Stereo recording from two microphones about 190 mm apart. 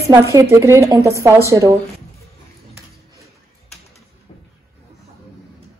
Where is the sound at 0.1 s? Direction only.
15° right (ahead or behind).